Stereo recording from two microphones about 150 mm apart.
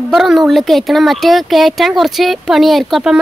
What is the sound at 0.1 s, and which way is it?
A woman's voice, centre (ahead or behind).